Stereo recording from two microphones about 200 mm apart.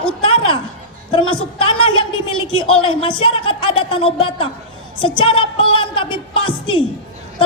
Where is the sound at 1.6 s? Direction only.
25° left (ahead or behind).